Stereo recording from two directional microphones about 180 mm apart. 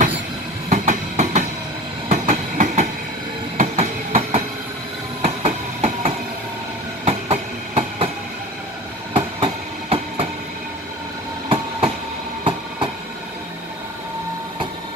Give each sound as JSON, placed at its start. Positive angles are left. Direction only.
{"t": 0.7, "sound": "train", "side_deg": -40}
{"t": 9.1, "sound": "train", "side_deg": -30}
{"t": 11.4, "sound": "train", "side_deg": -30}